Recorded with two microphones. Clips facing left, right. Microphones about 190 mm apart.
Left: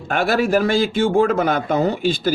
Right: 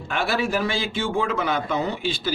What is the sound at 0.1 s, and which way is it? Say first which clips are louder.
A man's voice: left 7 dB; 45° left (ahead or behind).